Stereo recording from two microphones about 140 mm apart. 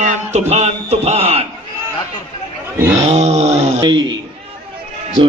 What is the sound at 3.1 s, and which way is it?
Speech, 50° right (ahead or behind).